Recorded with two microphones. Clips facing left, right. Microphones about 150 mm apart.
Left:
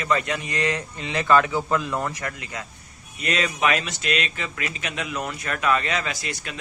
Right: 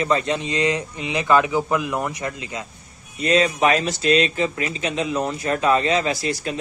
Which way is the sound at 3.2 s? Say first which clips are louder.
Right 6 dB; 30° right (ahead or behind).